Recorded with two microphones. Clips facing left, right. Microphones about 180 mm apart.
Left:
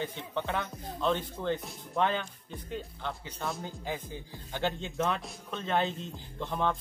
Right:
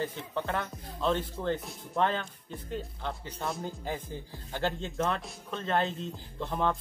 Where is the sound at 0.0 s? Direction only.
Centre (ahead or behind).